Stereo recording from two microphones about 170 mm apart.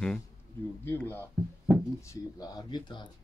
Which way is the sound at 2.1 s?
20° left (ahead or behind).